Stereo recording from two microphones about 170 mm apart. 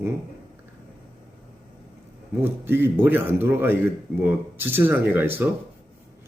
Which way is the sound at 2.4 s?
15° right (ahead or behind).